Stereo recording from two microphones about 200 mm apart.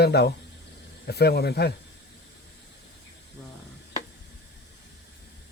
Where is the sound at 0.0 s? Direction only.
55° left (ahead or behind).